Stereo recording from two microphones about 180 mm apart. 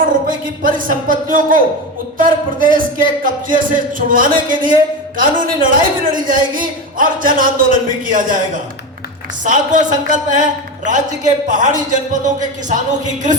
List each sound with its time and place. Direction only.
0.0 s a man's voice: 50° right (ahead or behind)
9.4 s a man's voice: 45° right (ahead or behind)